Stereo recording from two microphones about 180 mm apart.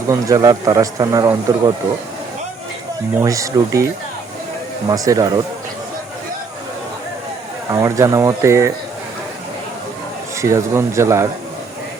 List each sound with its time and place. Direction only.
0.1 s speech: 20° right (ahead or behind)
3.2 s speech: 20° right (ahead or behind)
7.7 s speech: 15° right (ahead or behind)
10.3 s speech: 15° right (ahead or behind)